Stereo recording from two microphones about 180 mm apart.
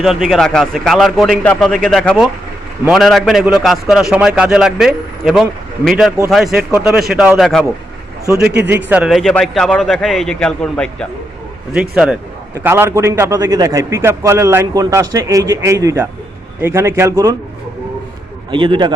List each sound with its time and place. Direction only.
0.0 s a man's voice: centre (ahead or behind)
8.7 s a man's voice: 5° right (ahead or behind)
11.7 s a man's voice: 5° right (ahead or behind)
18.5 s a man's voice: 25° right (ahead or behind)